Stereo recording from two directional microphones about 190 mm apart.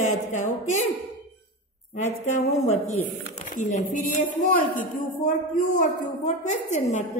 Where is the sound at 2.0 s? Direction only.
40° left (ahead or behind).